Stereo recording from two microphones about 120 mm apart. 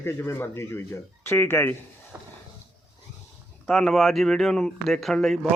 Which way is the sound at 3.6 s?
Centre (ahead or behind).